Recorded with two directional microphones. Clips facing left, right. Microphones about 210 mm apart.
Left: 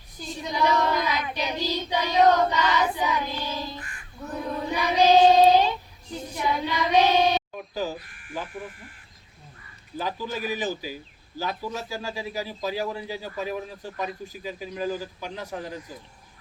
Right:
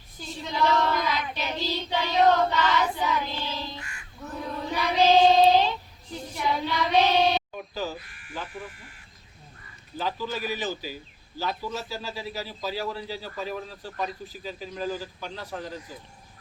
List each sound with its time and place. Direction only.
0.2 s child singing: 15° left (ahead or behind)
3.8 s crow: 50° left (ahead or behind)
4.6 s child singing: 15° left (ahead or behind)
7.7 s speech: 15° left (ahead or behind)
8.1 s sheep: 50° left (ahead or behind)
10.0 s a man's voice: 15° left (ahead or behind)